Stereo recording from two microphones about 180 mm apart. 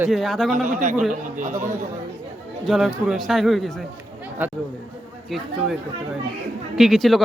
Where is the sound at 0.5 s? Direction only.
45° right (ahead or behind).